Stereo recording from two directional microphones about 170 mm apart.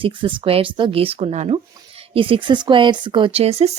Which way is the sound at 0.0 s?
30° right (ahead or behind).